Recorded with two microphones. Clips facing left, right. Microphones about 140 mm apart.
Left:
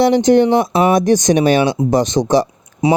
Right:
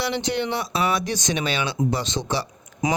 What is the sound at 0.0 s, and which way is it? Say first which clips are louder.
Speech: left 14 dB; 45° left (ahead or behind).